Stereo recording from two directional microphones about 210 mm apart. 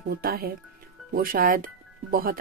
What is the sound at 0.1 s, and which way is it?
Speech, 45° right (ahead or behind).